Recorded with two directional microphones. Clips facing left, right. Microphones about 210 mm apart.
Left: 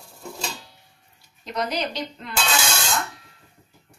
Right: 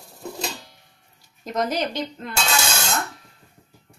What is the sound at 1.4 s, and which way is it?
Speech, 50° right (ahead or behind).